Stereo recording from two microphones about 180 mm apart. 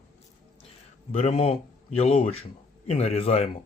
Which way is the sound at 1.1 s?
35° left (ahead or behind).